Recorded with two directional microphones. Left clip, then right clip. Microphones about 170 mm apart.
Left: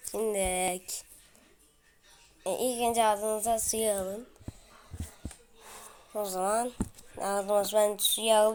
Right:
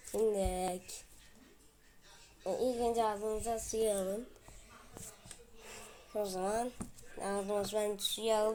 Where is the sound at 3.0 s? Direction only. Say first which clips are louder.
Left 8 dB; 10° left (ahead or behind).